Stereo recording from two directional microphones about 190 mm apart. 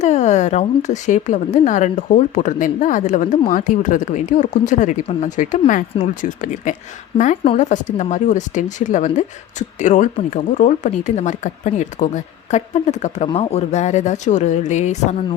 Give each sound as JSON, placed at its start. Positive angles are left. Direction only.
{"t": 0.0, "sound": "a woman's voice", "side_deg": 40}